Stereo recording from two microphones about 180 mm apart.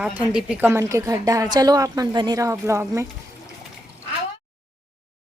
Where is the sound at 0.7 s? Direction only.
15° right (ahead or behind).